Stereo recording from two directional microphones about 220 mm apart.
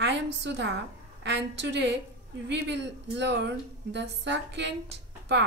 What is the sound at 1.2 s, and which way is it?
A woman's voice, 50° right (ahead or behind).